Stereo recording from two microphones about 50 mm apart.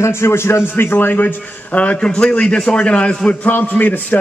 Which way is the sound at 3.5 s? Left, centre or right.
Left.